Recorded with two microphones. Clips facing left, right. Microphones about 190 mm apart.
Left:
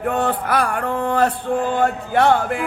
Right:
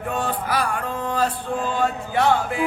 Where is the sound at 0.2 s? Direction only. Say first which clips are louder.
Left 2 dB; 60° left (ahead or behind).